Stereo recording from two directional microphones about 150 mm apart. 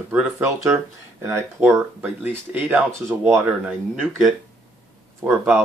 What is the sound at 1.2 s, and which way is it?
Speech, 20° right (ahead or behind).